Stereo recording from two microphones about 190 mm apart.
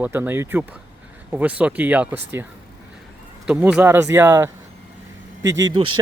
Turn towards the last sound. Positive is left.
turn(degrees=-25)  # may be behind; listen again after turning